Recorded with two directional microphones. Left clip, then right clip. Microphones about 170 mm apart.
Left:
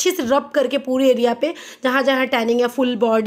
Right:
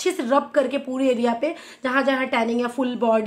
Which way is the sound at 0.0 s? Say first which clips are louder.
Left 3 dB; 50° left (ahead or behind).